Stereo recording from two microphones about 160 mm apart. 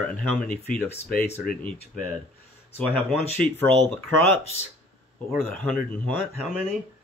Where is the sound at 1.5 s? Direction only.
60° left (ahead or behind).